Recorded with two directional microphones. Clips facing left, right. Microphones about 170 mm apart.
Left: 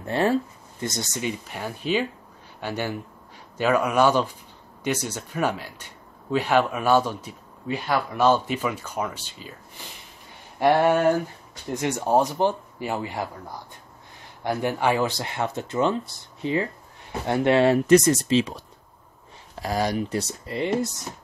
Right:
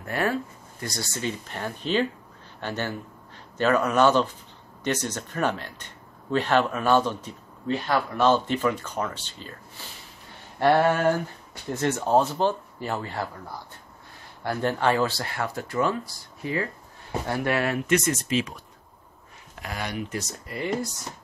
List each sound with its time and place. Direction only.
0.0 s speech: 25° left (ahead or behind); by 9.5 s 10° left (ahead or behind)
10.6 s speech: 15° left (ahead or behind)
14.4 s speech: 15° left (ahead or behind)
17.7 s speech: 35° left (ahead or behind)
19.6 s speech: 35° left (ahead or behind)